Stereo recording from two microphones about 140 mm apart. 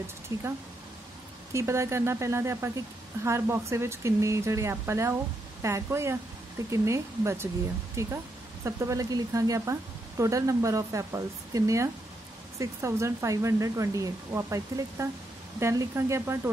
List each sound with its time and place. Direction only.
0.3 s speech: 20° right (ahead or behind)
1.5 s speech: 20° right (ahead or behind)